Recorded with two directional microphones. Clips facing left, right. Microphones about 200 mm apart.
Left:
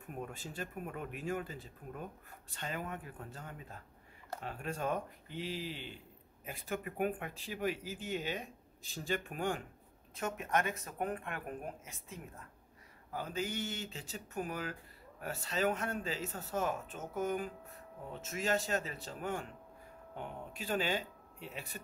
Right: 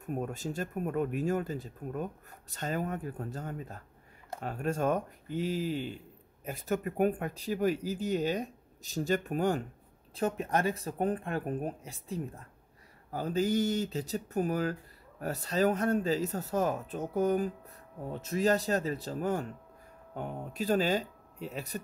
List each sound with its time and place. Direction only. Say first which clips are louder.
0.1 s speech: right 9 dB; 40° right (ahead or behind)